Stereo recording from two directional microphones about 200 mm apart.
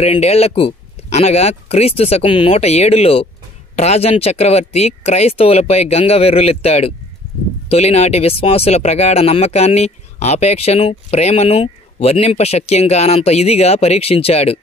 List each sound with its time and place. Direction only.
0.0 s speech: 30° left (ahead or behind)